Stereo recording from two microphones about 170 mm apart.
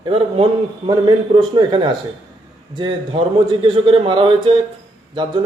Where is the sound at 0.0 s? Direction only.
30° right (ahead or behind).